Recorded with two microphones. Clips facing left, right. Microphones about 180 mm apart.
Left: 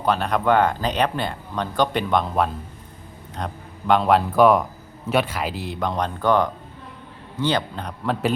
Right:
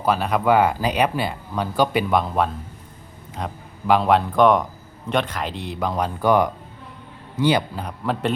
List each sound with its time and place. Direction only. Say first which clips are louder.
0.0 s speech: right 1 dB; 5° right (ahead or behind)